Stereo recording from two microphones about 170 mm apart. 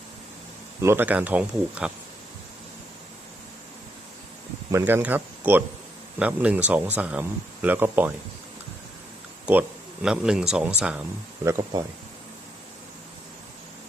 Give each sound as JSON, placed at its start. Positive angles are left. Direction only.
{"t": 0.8, "sound": "speech", "side_deg": -15}
{"t": 4.7, "sound": "speech", "side_deg": -15}
{"t": 9.5, "sound": "speech", "side_deg": -5}
{"t": 11.4, "sound": "speech", "side_deg": -20}